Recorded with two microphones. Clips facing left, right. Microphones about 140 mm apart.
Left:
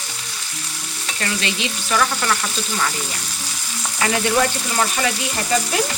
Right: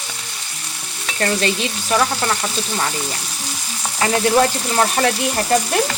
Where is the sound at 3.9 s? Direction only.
35° right (ahead or behind).